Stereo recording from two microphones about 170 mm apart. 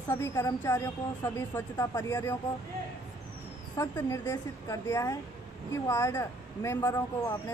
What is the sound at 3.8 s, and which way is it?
Speech, 15° left (ahead or behind).